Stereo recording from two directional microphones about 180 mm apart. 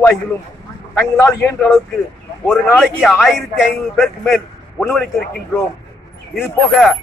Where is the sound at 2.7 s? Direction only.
5° left (ahead or behind).